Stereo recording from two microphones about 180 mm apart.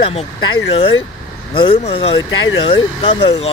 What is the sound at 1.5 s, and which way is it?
Speech, 35° left (ahead or behind).